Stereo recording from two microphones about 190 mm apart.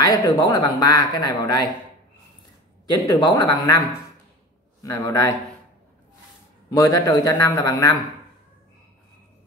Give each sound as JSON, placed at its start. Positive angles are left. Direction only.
{"t": 0.0, "sound": "speech", "side_deg": 20}
{"t": 2.9, "sound": "speech", "side_deg": 20}
{"t": 4.8, "sound": "a man's voice", "side_deg": 15}
{"t": 6.7, "sound": "a man's voice", "side_deg": 20}